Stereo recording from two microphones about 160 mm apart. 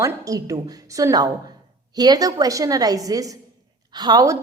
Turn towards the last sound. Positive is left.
turn(degrees=-25)  # may be behind; listen again after turning